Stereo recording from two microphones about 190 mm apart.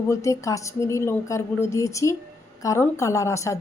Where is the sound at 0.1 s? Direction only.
15° left (ahead or behind).